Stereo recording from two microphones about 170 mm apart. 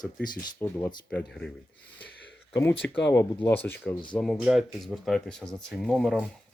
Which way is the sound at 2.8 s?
10° left (ahead or behind).